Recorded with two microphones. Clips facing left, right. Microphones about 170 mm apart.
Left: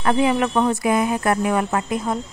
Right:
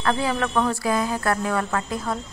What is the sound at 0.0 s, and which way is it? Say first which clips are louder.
A woman's voice: left 5 dB; 20° left (ahead or behind).